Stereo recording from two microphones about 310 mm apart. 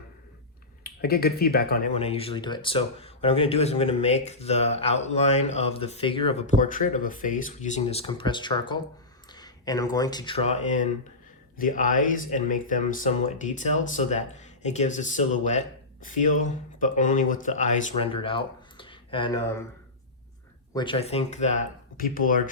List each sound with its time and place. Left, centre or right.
0.9 s speech: left; by 19.6 s centre
20.7 s speech: centre